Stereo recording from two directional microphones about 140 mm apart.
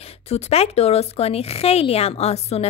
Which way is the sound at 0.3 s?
45° left (ahead or behind).